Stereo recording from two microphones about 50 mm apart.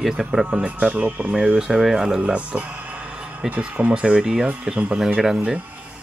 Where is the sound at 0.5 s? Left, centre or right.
Right.